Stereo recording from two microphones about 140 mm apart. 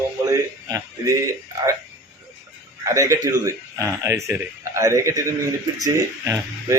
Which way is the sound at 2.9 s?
25° right (ahead or behind).